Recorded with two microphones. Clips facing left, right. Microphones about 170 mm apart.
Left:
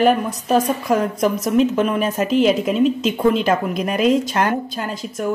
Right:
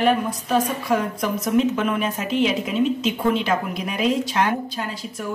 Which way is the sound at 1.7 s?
45° left (ahead or behind).